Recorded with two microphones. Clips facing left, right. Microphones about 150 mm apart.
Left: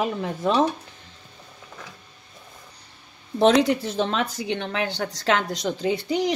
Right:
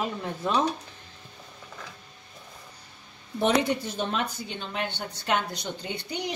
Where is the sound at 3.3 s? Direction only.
85° left.